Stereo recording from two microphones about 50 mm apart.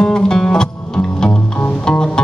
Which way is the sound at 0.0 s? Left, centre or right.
Centre.